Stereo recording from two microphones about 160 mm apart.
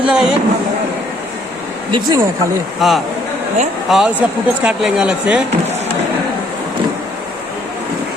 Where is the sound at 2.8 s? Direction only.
Centre (ahead or behind).